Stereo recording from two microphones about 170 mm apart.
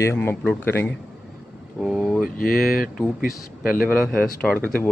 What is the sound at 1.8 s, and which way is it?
Speech, centre (ahead or behind).